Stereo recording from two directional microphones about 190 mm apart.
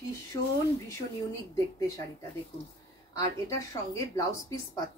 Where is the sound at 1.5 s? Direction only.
15° left (ahead or behind).